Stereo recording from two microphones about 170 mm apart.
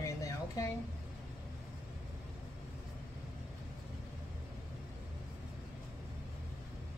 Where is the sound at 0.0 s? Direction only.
20° left (ahead or behind).